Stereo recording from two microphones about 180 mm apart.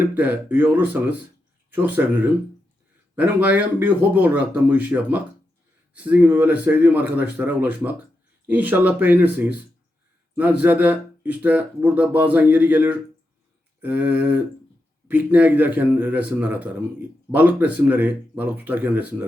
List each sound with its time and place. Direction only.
0.2 s speech: 10° right (ahead or behind)